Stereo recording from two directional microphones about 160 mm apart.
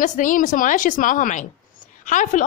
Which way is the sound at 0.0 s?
55° left (ahead or behind).